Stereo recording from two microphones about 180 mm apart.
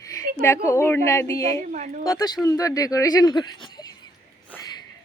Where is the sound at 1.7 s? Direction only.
45° right (ahead or behind).